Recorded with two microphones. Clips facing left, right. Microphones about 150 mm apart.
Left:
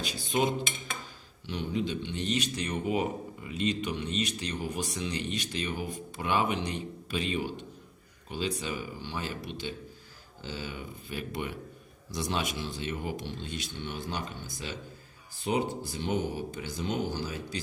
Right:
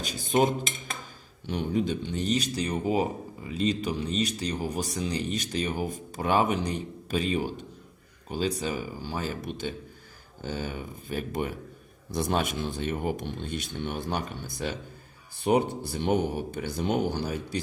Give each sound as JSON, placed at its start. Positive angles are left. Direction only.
{"t": 0.0, "sound": "cutlery", "side_deg": -45}
{"t": 1.5, "sound": "speech", "side_deg": -45}
{"t": 12.1, "sound": "speech", "side_deg": -55}